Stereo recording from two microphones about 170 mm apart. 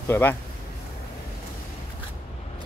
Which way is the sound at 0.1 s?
10° left (ahead or behind).